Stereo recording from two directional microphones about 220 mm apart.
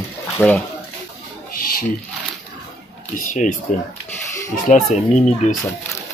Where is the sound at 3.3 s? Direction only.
35° left (ahead or behind).